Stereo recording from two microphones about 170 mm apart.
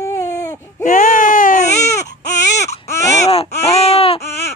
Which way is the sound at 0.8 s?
50° left (ahead or behind).